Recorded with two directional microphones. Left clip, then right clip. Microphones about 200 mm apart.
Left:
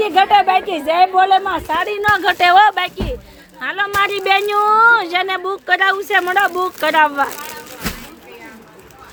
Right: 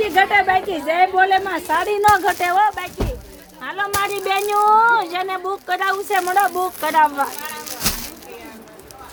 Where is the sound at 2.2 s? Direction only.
20° left (ahead or behind).